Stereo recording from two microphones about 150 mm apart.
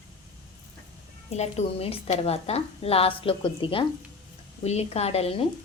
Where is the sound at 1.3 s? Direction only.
45° left (ahead or behind).